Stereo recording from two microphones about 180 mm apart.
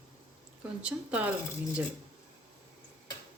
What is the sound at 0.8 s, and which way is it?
Speech, 5° right (ahead or behind).